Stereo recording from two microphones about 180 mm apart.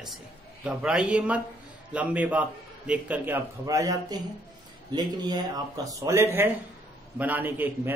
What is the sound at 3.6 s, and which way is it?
A man's voice, 20° right (ahead or behind).